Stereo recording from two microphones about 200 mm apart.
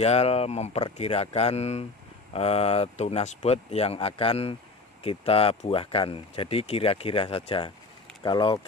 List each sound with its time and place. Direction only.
0.0 s speech: 30° left (ahead or behind)